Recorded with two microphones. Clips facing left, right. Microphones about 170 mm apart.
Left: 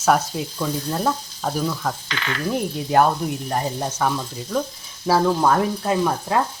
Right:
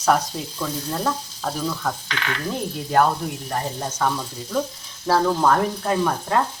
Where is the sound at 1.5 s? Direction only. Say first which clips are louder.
Left 2 dB; 5° left (ahead or behind).